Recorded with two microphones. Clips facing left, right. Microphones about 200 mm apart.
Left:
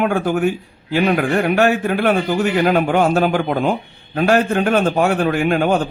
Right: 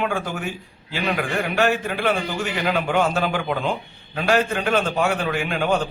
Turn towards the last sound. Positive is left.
turn(degrees=50)  # may be behind; listen again after turning